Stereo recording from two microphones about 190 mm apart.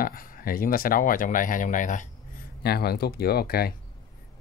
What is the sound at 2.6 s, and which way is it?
Speech, 55° left (ahead or behind).